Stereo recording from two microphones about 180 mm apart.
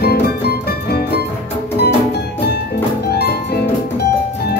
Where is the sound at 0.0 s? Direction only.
65° left (ahead or behind).